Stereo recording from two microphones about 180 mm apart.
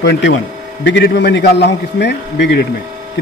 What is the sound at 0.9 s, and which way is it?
Speech, 75° left (ahead or behind).